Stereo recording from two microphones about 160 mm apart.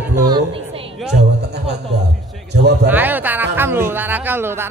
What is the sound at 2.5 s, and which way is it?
Speech, 90° right.